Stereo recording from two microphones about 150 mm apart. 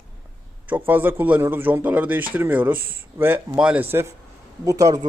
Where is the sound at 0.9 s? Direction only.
15° right (ahead or behind).